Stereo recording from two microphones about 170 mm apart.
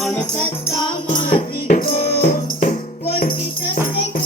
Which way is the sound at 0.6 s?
35° left (ahead or behind).